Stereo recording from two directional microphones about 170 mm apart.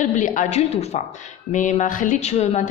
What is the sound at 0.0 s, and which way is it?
A woman's voice, 50° left (ahead or behind).